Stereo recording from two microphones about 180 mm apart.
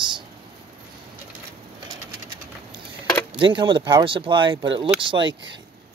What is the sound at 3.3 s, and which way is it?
Speech, 30° right (ahead or behind).